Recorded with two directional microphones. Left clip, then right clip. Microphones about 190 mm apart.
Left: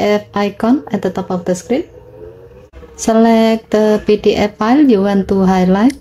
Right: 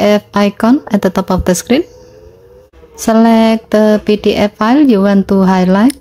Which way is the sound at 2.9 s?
20° right (ahead or behind).